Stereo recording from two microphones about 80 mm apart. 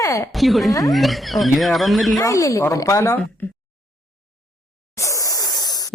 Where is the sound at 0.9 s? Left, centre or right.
Centre.